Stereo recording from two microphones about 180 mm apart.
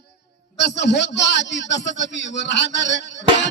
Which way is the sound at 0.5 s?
70° left (ahead or behind).